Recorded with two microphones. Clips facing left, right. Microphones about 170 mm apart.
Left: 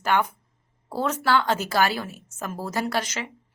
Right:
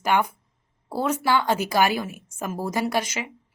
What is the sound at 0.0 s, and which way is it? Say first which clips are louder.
A woman's voice: right 1 dB; 10° right (ahead or behind).